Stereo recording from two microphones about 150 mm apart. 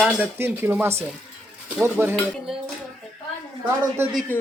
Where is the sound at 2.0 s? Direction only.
15° right (ahead or behind).